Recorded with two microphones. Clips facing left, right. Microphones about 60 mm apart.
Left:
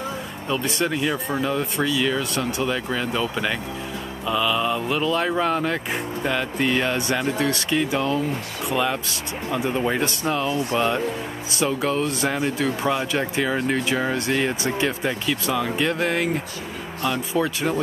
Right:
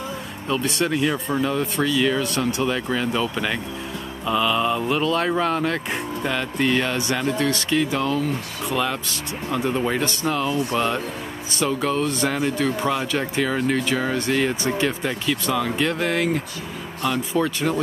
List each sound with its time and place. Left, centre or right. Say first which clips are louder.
0.5 s speech: right 1 dB; centre